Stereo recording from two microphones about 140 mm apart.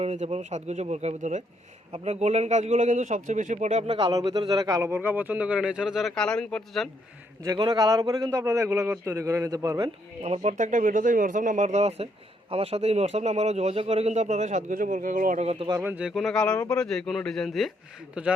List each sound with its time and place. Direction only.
0.0 s a man's voice: 50° right (ahead or behind)
3.8 s a man's voice: 35° right (ahead or behind)
4.9 s speech: 15° right (ahead or behind); by 6.8 s 5° left (ahead or behind)
7.4 s a man's voice: 30° right (ahead or behind)
10.2 s a man's voice: 55° right (ahead or behind); by 15.4 s 75° right (ahead or behind)
15.4 s speech: 50° right (ahead or behind)
15.8 s speech: 10° right (ahead or behind)